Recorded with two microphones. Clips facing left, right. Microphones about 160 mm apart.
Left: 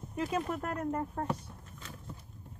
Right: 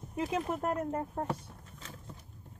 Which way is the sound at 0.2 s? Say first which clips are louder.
Right 1 dB; 20° right (ahead or behind).